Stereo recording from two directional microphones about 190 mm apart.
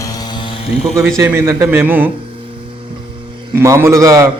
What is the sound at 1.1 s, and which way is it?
Speech, 15° right (ahead or behind).